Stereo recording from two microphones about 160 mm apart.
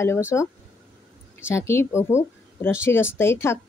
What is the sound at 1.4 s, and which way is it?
Speech, 15° left (ahead or behind).